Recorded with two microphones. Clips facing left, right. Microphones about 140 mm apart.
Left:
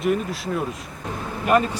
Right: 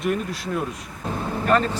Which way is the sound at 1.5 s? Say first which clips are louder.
Left 2 dB; 10° left (ahead or behind).